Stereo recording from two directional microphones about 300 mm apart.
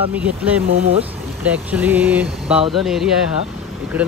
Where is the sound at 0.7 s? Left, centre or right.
Centre.